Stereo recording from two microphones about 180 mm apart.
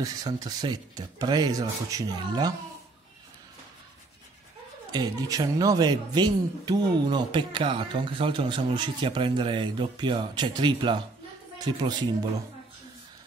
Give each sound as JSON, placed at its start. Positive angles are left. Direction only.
{"t": 0.0, "sound": "speech", "side_deg": -20}
{"t": 4.9, "sound": "a woman's voice", "side_deg": -20}